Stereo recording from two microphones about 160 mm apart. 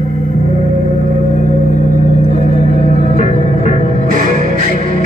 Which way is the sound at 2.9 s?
50° left (ahead or behind).